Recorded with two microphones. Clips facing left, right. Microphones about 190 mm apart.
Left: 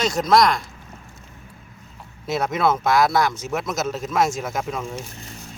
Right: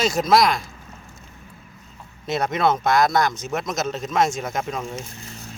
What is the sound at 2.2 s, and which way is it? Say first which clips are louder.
Speech: even; 5° left (ahead or behind).